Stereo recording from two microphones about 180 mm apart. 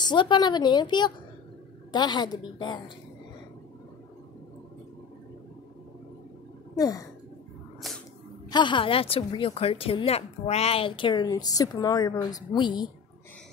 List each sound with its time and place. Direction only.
0.0 s a woman's voice: 25° left (ahead or behind)
6.7 s a sound: 20° left (ahead or behind)
8.5 s a woman's voice: 25° left (ahead or behind)